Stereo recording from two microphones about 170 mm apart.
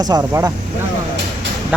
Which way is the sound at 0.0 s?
20° right (ahead or behind).